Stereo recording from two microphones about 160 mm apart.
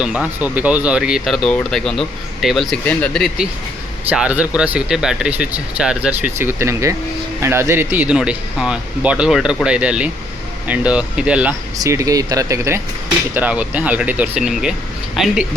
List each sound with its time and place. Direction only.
0.0 s speech: 5° right (ahead or behind)
6.4 s speech: 15° right (ahead or behind)
11.8 s speech: 20° right (ahead or behind); by 15.4 s 5° right (ahead or behind)